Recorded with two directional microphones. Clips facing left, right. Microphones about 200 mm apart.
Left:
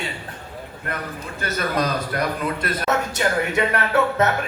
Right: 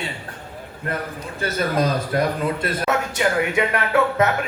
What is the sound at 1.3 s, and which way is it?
A man's voice, 30° right (ahead or behind).